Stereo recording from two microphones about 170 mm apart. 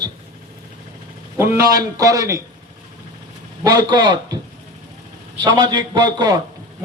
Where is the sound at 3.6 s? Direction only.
25° right (ahead or behind).